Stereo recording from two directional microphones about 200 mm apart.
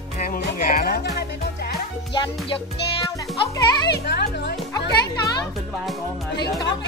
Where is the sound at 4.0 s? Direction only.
55° left (ahead or behind).